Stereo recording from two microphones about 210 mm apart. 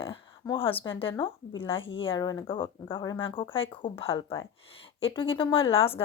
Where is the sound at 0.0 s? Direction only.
25° left (ahead or behind).